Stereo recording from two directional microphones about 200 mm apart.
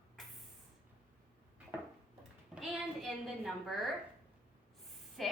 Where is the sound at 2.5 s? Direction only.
Centre (ahead or behind).